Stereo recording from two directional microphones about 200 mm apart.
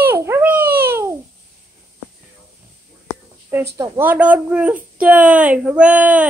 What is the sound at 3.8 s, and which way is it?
A woman's voice, 10° right (ahead or behind).